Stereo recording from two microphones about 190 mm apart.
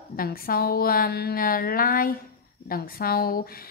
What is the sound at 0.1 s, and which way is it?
A woman's voice, 50° left (ahead or behind).